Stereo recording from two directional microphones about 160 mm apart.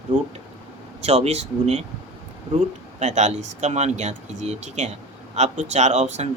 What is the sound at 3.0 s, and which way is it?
Speech, 45° right (ahead or behind).